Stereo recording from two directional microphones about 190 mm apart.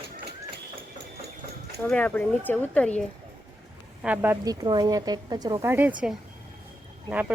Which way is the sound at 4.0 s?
10° right (ahead or behind).